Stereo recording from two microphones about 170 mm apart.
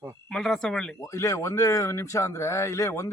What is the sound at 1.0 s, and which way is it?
Speech, 20° left (ahead or behind).